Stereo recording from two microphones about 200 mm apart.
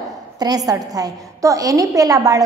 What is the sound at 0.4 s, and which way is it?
A woman's voice, 20° right (ahead or behind).